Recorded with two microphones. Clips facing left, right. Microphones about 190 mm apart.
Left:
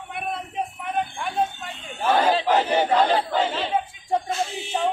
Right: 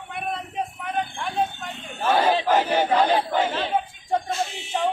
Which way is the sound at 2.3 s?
15° right (ahead or behind).